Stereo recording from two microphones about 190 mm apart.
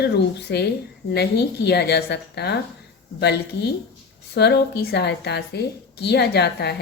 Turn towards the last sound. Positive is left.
turn(degrees=60)  # may be behind; listen again after turning